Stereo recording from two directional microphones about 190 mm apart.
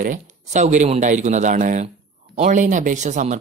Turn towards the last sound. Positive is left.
turn(degrees=-40)  # may be behind; listen again after turning